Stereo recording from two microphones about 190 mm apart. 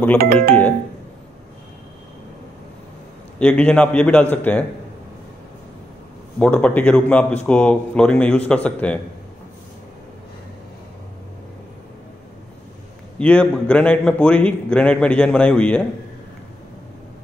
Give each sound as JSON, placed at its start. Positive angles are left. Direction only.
{"t": 0.2, "sound": "speech", "side_deg": -50}
{"t": 3.3, "sound": "a man's voice", "side_deg": 5}
{"t": 6.4, "sound": "a man's voice", "side_deg": 10}
{"t": 13.2, "sound": "a man's voice", "side_deg": 5}